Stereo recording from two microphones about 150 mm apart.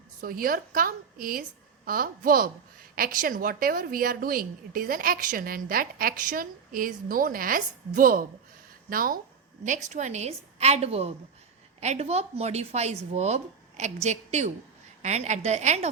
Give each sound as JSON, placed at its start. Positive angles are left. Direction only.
{"t": 0.2, "sound": "a woman's voice", "side_deg": -75}
{"t": 9.6, "sound": "speech", "side_deg": -55}